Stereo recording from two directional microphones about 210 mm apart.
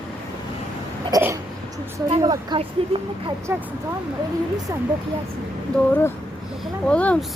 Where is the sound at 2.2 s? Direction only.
20° right (ahead or behind).